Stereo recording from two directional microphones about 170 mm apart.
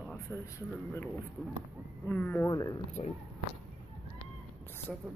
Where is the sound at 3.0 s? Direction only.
35° left (ahead or behind).